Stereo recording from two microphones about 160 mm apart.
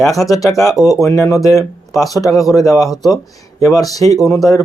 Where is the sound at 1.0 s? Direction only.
20° left (ahead or behind).